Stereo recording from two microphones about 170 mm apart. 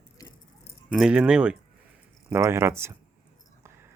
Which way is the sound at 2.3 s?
15° right (ahead or behind).